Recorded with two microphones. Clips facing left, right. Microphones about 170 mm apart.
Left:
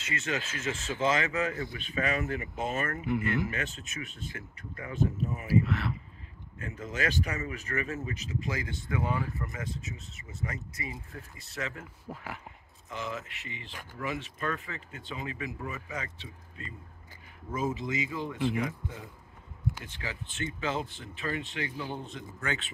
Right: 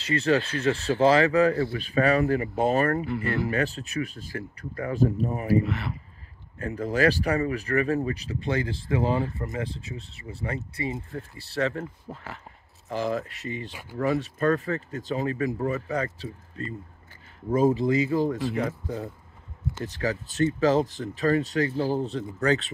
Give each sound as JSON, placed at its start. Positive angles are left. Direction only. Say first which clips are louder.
{"t": 0.0, "sound": "speech", "louder": "right 11 dB", "side_deg": -35}
{"t": 5.7, "sound": "speech", "louder": "right 1 dB", "side_deg": 0}
{"t": 6.6, "sound": "speech", "louder": "right 10 dB", "side_deg": -35}
{"t": 12.1, "sound": "speech", "louder": "right 1 dB", "side_deg": 10}
{"t": 12.8, "sound": "speech", "louder": "right 10 dB", "side_deg": -35}